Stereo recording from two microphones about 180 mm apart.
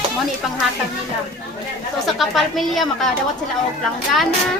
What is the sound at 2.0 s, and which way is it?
A woman's voice, centre (ahead or behind).